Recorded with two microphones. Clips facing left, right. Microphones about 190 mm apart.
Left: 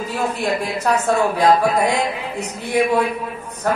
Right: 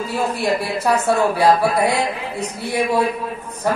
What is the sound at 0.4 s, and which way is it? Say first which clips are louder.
A woman's voice: right 1 dB; 10° right (ahead or behind).